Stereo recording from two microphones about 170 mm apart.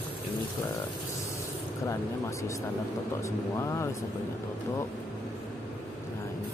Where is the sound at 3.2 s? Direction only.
15° left (ahead or behind).